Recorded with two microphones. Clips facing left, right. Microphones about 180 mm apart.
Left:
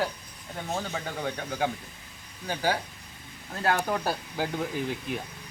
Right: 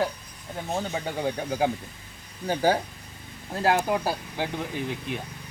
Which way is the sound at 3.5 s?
25° right (ahead or behind).